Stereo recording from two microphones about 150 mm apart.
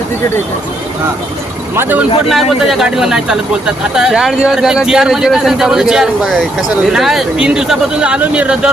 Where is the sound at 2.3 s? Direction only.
Centre (ahead or behind).